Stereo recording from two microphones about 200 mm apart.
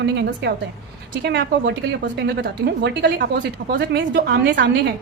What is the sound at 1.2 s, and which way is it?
A woman's voice, 60° right (ahead or behind).